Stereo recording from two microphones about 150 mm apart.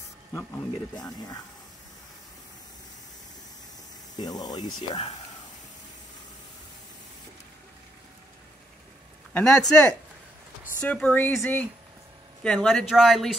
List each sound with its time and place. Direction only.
0.9 s speech: 25° left (ahead or behind)
4.2 s speech: 25° left (ahead or behind)
9.3 s speech: 5° left (ahead or behind)